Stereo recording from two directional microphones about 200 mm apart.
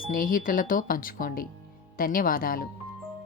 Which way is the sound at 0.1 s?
45° left (ahead or behind).